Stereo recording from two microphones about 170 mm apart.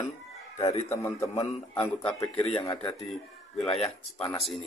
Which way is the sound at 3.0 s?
Centre (ahead or behind).